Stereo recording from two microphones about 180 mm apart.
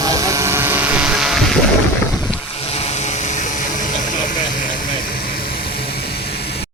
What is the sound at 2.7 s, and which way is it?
Vehicle, 35° left (ahead or behind).